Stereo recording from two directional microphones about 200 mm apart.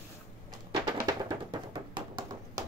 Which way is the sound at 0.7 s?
20° right (ahead or behind).